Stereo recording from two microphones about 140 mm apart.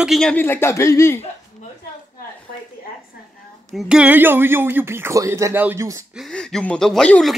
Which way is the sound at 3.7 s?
5° right (ahead or behind).